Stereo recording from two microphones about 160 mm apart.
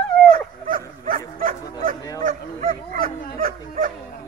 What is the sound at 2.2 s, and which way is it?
Bow-wow, 60° right (ahead or behind).